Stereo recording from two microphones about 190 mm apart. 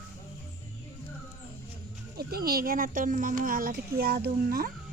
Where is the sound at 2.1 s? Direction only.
55° right (ahead or behind).